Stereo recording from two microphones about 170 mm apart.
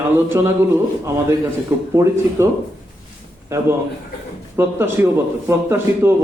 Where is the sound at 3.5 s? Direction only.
15° right (ahead or behind).